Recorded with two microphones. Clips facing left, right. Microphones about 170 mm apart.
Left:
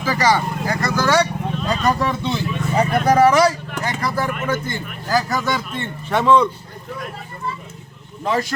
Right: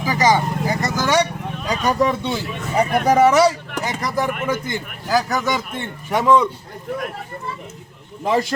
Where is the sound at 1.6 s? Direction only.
15° right (ahead or behind).